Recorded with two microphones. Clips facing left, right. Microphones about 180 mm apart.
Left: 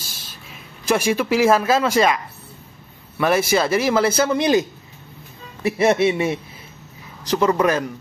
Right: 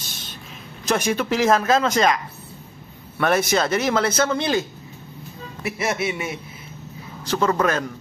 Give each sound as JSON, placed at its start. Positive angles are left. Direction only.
{"t": 0.8, "sound": "speech", "side_deg": 10}
{"t": 3.2, "sound": "speech", "side_deg": 5}
{"t": 5.6, "sound": "speech", "side_deg": 35}
{"t": 7.2, "sound": "speech", "side_deg": 15}